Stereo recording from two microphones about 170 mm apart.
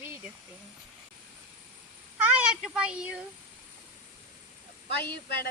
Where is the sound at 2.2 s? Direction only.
5° right (ahead or behind).